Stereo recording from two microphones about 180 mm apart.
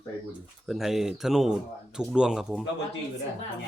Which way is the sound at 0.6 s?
Centre (ahead or behind).